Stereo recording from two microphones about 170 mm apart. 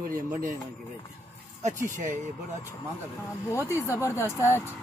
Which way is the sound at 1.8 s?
45° right (ahead or behind).